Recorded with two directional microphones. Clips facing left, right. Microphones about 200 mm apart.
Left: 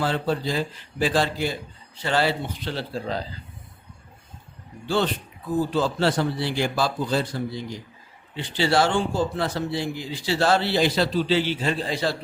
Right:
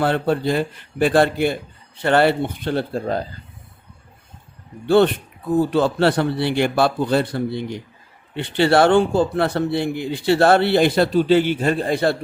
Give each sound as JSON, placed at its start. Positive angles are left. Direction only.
{"t": 0.0, "sound": "speech", "side_deg": -60}
{"t": 4.9, "sound": "speech", "side_deg": -60}